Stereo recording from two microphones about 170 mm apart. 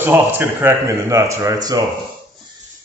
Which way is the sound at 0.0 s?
10° right (ahead or behind).